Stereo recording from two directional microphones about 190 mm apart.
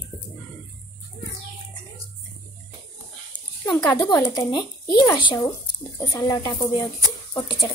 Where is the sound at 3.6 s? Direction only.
20° left (ahead or behind).